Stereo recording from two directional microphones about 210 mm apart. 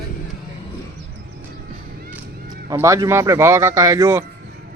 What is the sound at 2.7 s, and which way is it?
Speech, 15° right (ahead or behind).